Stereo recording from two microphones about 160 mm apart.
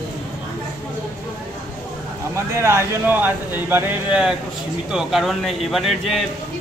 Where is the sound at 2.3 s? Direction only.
15° right (ahead or behind); by 6.2 s centre (ahead or behind).